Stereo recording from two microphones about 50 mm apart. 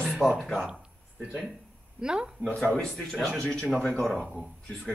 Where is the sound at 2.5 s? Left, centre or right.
Left.